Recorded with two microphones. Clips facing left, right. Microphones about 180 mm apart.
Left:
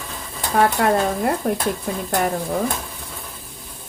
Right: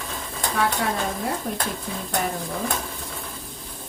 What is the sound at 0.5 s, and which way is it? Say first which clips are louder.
Speech: left 8 dB; 60° left (ahead or behind).